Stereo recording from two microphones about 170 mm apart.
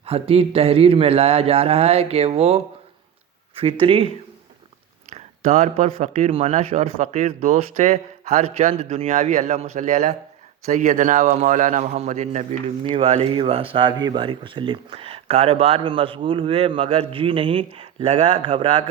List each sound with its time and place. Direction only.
0.0 s speech: 35° right (ahead or behind)
3.6 s speech: 30° right (ahead or behind)
5.1 s speech: 40° right (ahead or behind)
12.8 s speech: 30° right (ahead or behind)